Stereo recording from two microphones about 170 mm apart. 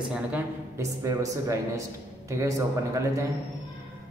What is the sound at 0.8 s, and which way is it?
A man's voice, 20° right (ahead or behind).